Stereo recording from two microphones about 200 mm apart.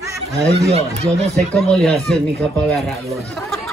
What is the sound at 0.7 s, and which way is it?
Speech, 35° right (ahead or behind).